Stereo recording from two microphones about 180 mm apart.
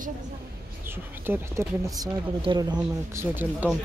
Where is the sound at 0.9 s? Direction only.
10° right (ahead or behind).